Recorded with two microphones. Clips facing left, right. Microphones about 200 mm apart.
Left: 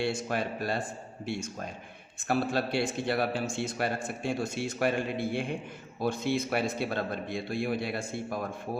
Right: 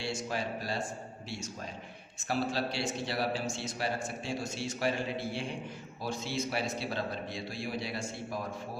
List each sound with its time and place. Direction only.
0.0 s a man's voice: 55° left (ahead or behind)
2.2 s a man's voice: 55° left (ahead or behind)